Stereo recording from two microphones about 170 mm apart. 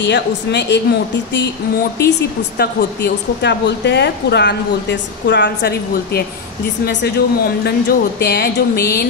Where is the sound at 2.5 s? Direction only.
75° left (ahead or behind).